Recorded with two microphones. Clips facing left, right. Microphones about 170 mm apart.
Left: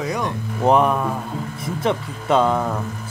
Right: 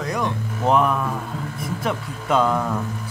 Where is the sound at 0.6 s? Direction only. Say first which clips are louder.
Left 3 dB; 30° left (ahead or behind).